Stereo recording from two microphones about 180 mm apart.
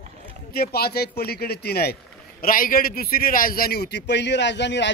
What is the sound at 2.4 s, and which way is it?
A man's voice, 50° left (ahead or behind).